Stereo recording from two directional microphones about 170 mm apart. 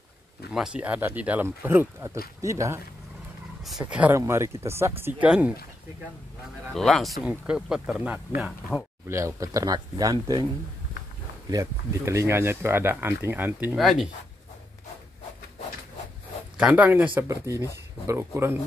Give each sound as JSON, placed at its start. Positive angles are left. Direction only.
{"t": 0.5, "sound": "speech", "side_deg": -5}
{"t": 3.6, "sound": "speech", "side_deg": -5}
{"t": 6.7, "sound": "speech", "side_deg": 0}
{"t": 9.0, "sound": "speech", "side_deg": -15}
{"t": 11.5, "sound": "speech", "side_deg": -15}
{"t": 13.7, "sound": "speech", "side_deg": 0}
{"t": 16.5, "sound": "speech", "side_deg": -10}